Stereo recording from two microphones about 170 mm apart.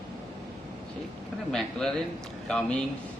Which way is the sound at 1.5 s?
5° left (ahead or behind).